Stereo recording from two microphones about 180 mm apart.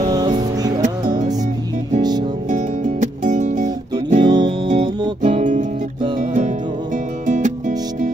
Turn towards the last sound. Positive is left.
turn(degrees=-45)  # may be behind; listen again after turning